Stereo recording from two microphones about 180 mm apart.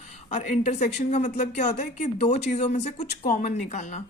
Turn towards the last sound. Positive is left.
turn(degrees=40)  # may be behind; listen again after turning